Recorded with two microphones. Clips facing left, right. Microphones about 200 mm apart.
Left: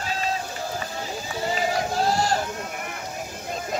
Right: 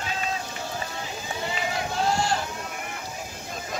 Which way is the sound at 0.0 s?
40° left (ahead or behind).